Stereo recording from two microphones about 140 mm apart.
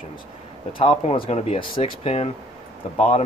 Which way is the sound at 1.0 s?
45° left (ahead or behind).